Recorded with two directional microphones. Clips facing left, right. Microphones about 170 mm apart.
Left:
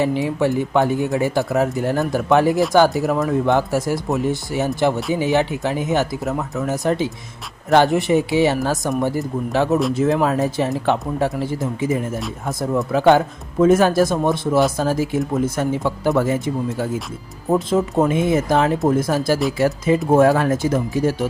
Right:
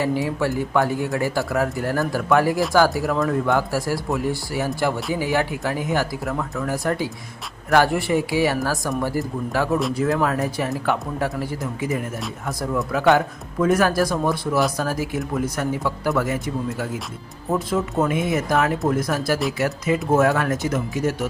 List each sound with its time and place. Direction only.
0.0 s speech: 20° left (ahead or behind)